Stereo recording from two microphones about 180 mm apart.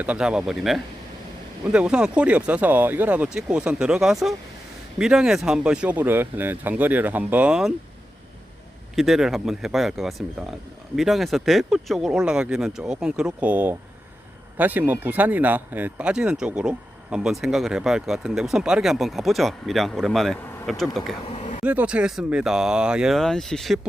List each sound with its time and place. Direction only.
0.0 s speech: 5° right (ahead or behind)
9.0 s speech: centre (ahead or behind)
21.3 s a sound: 40° left (ahead or behind)
21.6 s speech: 10° right (ahead or behind)